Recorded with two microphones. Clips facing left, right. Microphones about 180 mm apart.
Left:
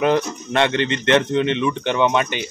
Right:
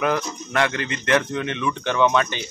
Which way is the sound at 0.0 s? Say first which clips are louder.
Left 5 dB; 25° left (ahead or behind).